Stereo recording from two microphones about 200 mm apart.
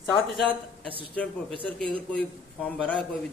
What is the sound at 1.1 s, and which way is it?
A man's voice, 5° left (ahead or behind).